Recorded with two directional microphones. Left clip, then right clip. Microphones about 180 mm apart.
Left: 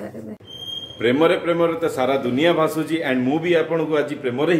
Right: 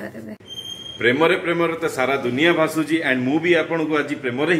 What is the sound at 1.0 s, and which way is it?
A man's voice, centre (ahead or behind).